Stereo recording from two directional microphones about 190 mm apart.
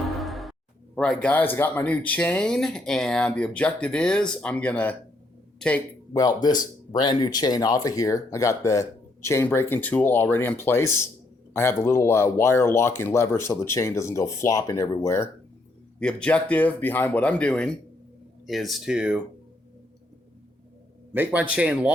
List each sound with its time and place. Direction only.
0.1 s music: centre (ahead or behind)
0.9 s speech: 5° left (ahead or behind)
6.1 s speech: 20° left (ahead or behind); by 19.2 s 5° right (ahead or behind)
21.1 s speech: 10° right (ahead or behind)